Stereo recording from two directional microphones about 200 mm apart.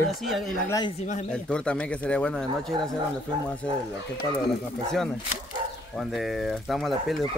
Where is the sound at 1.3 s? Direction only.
5° left (ahead or behind).